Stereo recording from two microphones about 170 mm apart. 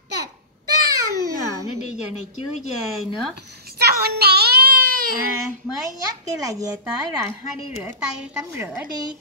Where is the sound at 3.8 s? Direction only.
70° right (ahead or behind).